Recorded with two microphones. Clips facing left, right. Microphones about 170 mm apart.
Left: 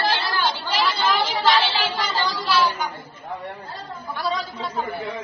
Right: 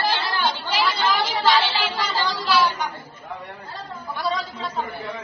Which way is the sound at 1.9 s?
Centre (ahead or behind).